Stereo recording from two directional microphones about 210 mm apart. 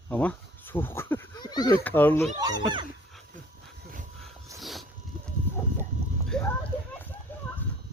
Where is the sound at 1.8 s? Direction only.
10° left (ahead or behind).